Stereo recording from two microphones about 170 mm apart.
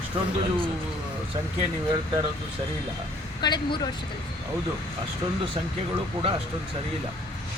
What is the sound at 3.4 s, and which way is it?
Speech, 25° left (ahead or behind).